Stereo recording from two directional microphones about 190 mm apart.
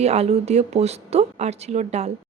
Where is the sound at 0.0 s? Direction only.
35° right (ahead or behind).